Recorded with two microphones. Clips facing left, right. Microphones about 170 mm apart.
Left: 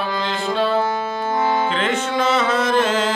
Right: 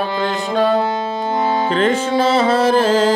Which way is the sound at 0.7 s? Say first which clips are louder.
Right 2 dB; 20° right (ahead or behind).